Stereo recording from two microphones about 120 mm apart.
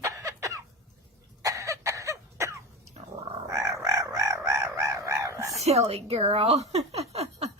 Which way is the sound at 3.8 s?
25° right (ahead or behind).